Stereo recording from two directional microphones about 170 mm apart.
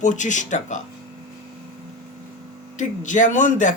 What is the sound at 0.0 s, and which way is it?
Speech, 45° left (ahead or behind).